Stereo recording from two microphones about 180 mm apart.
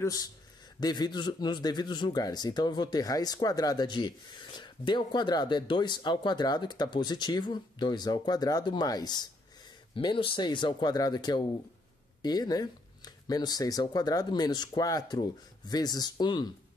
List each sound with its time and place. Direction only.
0.0 s speech: 20° left (ahead or behind)